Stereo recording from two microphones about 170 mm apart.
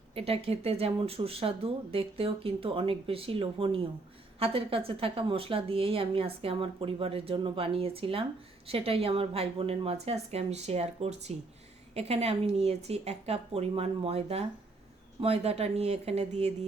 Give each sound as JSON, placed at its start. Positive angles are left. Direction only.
{"t": 0.1, "sound": "a woman's voice", "side_deg": -35}